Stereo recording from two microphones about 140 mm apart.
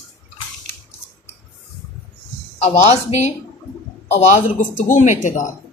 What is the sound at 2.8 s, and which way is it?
Speech, 50° left (ahead or behind).